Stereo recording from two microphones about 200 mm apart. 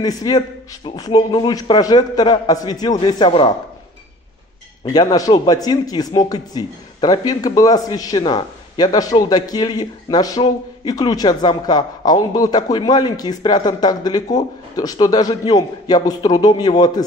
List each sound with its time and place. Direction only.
0.0 s speech: 20° left (ahead or behind)
4.8 s speech: 15° left (ahead or behind)